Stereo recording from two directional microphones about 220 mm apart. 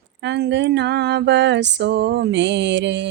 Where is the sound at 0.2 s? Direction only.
50° right (ahead or behind).